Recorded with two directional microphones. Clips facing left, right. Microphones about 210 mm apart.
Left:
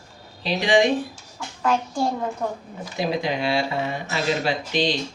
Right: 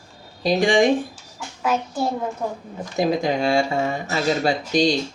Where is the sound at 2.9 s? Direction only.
45° right (ahead or behind).